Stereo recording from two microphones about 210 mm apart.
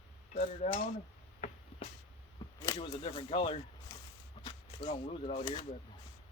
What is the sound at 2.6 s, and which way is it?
Speech, 20° left (ahead or behind).